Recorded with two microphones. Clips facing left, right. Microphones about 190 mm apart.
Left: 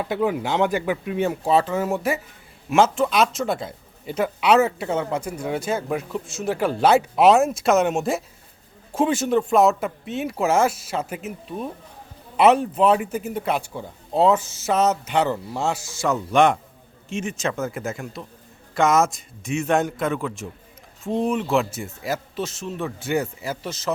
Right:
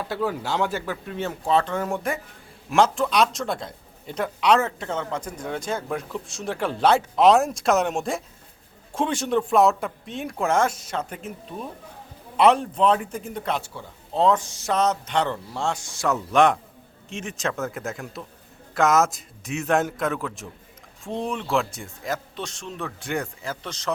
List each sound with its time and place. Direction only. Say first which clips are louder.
0.0 s a man's voice: left 4 dB; 15° left (ahead or behind)